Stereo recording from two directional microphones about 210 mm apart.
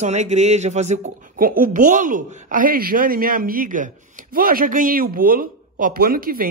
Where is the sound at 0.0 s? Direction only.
35° right (ahead or behind).